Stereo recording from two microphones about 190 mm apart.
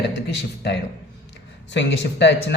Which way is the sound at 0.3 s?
65° left (ahead or behind).